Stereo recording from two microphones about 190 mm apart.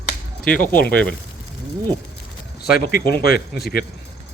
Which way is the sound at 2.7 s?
50° left (ahead or behind).